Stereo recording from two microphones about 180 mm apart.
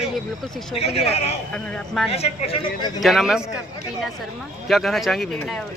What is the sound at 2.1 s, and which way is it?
Speech, 35° left (ahead or behind).